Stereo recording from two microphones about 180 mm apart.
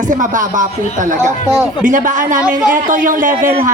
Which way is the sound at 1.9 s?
45° right (ahead or behind).